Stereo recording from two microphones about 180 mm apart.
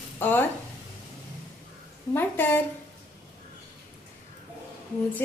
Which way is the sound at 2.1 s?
10° left (ahead or behind).